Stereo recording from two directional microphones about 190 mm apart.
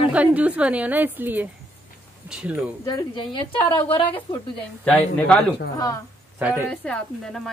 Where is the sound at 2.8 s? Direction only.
25° left (ahead or behind).